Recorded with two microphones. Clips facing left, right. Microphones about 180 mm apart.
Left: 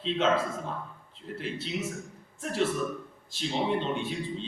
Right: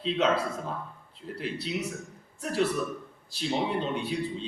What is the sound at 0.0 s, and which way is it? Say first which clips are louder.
A man's voice: even; 40° right (ahead or behind).